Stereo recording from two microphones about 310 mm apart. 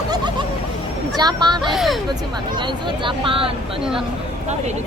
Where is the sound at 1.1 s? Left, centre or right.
Centre.